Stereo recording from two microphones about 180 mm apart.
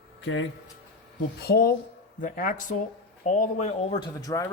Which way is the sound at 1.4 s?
60° left (ahead or behind).